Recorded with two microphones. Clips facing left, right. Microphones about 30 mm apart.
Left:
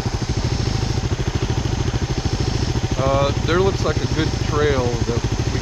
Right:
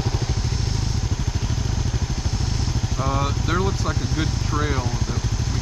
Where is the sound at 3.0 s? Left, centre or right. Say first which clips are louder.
Left 6 dB; left.